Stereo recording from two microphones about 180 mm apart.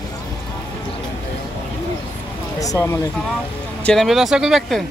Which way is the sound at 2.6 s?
20° left (ahead or behind).